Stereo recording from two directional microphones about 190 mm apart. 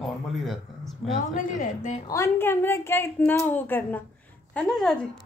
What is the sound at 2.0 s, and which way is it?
Speech, 15° left (ahead or behind).